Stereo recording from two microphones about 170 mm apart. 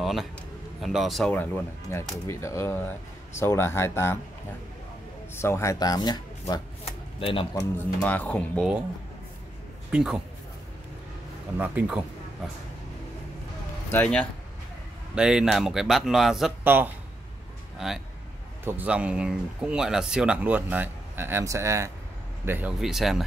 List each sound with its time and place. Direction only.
0.0 s a sound: centre (ahead or behind)
0.7 s speech: centre (ahead or behind); by 4.2 s 15° left (ahead or behind)
5.3 s speech: 15° left (ahead or behind); by 7.6 s 35° left (ahead or behind)
8.0 s speech: 10° left (ahead or behind)
9.8 s a man's voice: 5° right (ahead or behind)
11.5 s speech: 10° right (ahead or behind)
13.8 s speech: 10° left (ahead or behind)
15.1 s speech: 5° right (ahead or behind)